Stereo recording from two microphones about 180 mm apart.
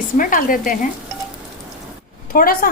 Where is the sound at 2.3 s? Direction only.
55° left (ahead or behind).